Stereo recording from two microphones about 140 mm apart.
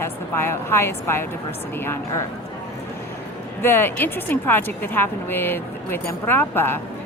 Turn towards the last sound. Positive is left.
turn(degrees=15)  # may be behind; listen again after turning